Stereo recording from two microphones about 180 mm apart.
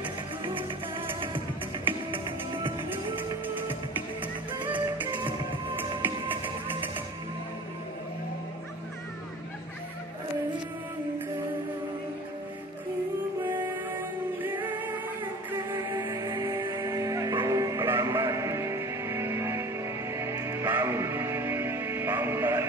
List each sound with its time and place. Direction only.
0.0 s music: 30° right (ahead or behind)
2.0 s music: 30° right (ahead or behind)
4.7 s music: 25° right (ahead or behind)
13.4 s music: 10° right (ahead or behind)